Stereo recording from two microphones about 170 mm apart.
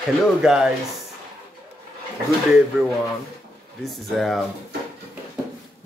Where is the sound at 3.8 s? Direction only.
Centre (ahead or behind).